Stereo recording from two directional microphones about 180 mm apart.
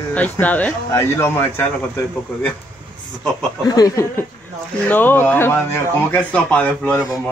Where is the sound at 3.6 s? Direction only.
20° left (ahead or behind).